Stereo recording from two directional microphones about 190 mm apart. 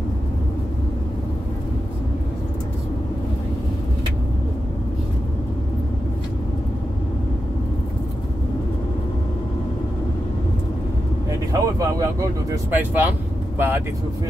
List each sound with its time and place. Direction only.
11.5 s vehicle: 15° right (ahead or behind)
12.7 s speech: 10° right (ahead or behind)